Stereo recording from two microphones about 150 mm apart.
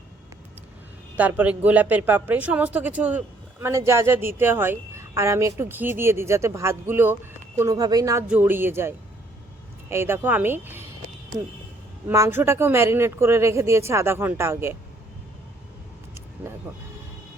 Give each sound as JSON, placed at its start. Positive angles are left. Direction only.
{"t": 1.1, "sound": "speech", "side_deg": -10}
{"t": 8.3, "sound": "speech", "side_deg": -15}
{"t": 12.0, "sound": "speech", "side_deg": -15}
{"t": 16.1, "sound": "vehicle", "side_deg": -15}